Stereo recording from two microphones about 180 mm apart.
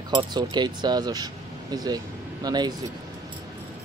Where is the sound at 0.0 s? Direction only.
25° right (ahead or behind).